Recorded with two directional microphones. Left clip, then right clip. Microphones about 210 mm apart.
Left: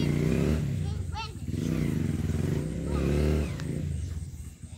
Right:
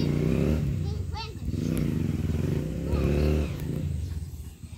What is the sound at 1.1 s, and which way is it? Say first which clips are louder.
Wild animals: left 1 dB; centre (ahead or behind).